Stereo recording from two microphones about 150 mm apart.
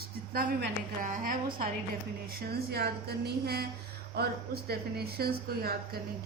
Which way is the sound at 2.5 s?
90° right.